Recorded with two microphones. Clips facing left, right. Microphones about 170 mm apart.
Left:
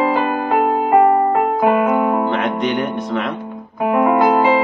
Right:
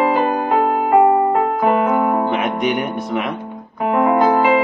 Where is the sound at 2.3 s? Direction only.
10° right (ahead or behind).